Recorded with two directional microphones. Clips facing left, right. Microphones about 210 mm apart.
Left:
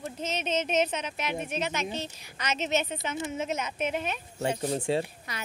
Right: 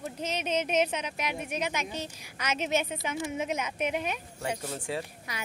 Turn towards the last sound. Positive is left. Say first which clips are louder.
# even
turn(degrees=-10)  # may be behind; listen again after turning